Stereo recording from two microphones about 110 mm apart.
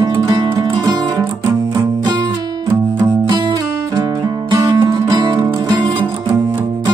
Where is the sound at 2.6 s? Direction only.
40° right (ahead or behind).